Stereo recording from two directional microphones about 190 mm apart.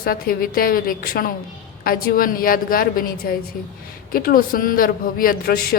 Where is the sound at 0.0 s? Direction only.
50° left (ahead or behind).